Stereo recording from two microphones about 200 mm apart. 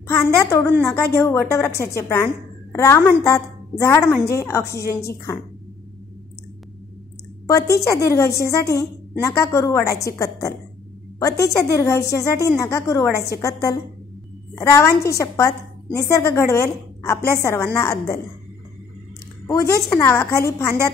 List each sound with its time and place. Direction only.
0.1 s a woman's voice: 15° left (ahead or behind)
7.9 s a woman's voice: 15° left (ahead or behind)
19.4 s a woman's voice: 15° left (ahead or behind)